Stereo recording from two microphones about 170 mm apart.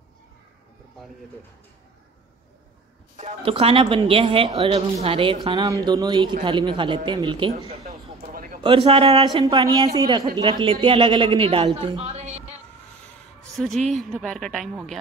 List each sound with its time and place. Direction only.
3.2 s speech: 35° right (ahead or behind)
8.3 s a sound: 55° right (ahead or behind)
8.6 s speech: 35° right (ahead or behind)
13.4 s music: 5° left (ahead or behind)
13.9 s a woman's voice: 5° left (ahead or behind)